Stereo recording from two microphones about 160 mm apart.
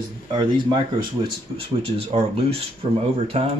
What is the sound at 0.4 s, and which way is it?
Speech, 30° right (ahead or behind).